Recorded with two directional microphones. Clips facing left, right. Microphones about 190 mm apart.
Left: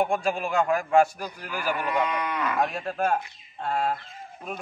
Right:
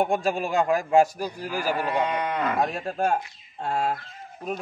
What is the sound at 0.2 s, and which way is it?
A man's voice, 35° right (ahead or behind).